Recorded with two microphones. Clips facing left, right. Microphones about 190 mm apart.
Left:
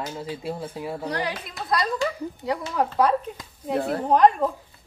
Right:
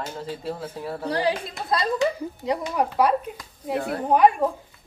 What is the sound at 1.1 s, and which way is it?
A woman's voice, 30° right (ahead or behind).